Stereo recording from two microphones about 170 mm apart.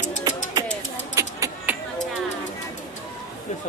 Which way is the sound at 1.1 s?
20° right (ahead or behind).